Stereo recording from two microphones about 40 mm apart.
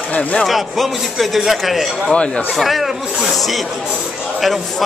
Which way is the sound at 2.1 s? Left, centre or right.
Left.